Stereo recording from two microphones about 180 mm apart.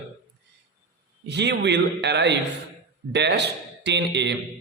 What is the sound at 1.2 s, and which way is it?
A man's voice, 70° right (ahead or behind).